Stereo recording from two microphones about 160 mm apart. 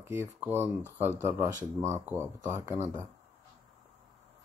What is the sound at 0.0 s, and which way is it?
Speech, 15° right (ahead or behind).